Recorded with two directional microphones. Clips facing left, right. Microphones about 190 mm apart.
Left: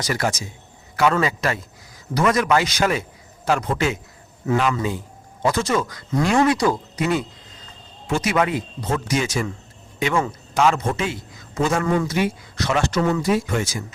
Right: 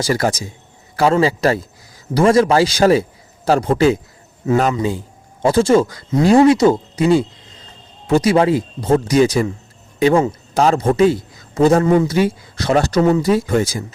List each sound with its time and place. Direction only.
0.0 s a man's voice: 35° right (ahead or behind)